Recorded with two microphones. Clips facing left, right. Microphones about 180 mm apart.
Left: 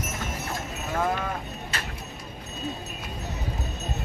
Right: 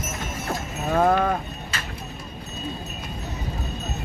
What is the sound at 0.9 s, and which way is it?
Livestock, 60° right (ahead or behind).